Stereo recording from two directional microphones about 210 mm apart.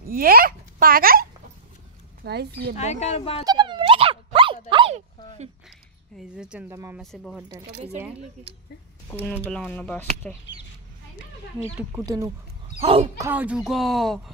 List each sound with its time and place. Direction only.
0.1 s a child's voice: 45° right (ahead or behind)
2.2 s speech: 50° right (ahead or behind)
2.8 s speech: 30° left (ahead or behind)
3.4 s a sound: 20° right (ahead or behind)
6.1 s speech: 5° right (ahead or behind)
7.0 s speech: centre (ahead or behind)
9.4 s speech: 10° left (ahead or behind)
11.6 s speech: 15° right (ahead or behind)
12.7 s speech: 30° right (ahead or behind)
13.2 s speech: 10° right (ahead or behind)